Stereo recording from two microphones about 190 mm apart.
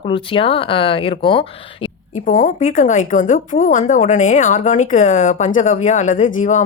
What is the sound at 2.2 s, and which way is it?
Speech, 45° left (ahead or behind).